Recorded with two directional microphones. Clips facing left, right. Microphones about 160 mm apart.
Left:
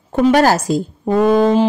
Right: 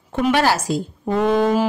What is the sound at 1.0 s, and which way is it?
Brass instrument, 35° left (ahead or behind).